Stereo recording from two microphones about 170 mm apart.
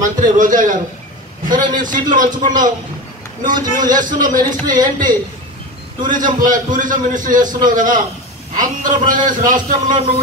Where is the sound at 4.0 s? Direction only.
25° right (ahead or behind).